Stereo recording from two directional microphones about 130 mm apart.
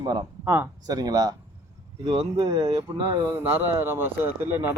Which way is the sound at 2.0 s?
40° right (ahead or behind).